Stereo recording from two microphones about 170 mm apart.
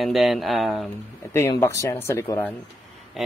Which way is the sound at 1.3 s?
15° left (ahead or behind).